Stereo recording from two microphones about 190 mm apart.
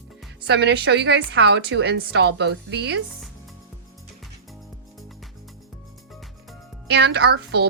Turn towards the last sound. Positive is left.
turn(degrees=-60)  # may be behind; listen again after turning